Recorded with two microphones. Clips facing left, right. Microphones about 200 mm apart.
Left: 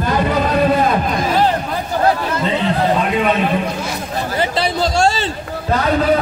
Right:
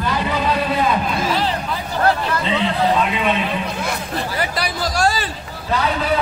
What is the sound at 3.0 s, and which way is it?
Speech, 45° left (ahead or behind).